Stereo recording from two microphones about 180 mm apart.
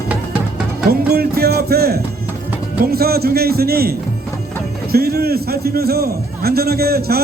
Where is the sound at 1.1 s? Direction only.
60° right (ahead or behind).